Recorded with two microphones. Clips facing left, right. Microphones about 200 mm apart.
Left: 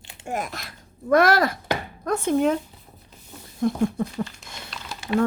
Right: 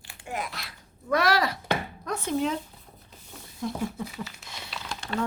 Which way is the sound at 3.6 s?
55° left (ahead or behind).